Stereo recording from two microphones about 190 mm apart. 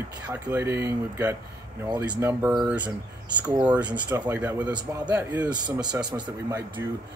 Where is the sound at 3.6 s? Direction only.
5° right (ahead or behind).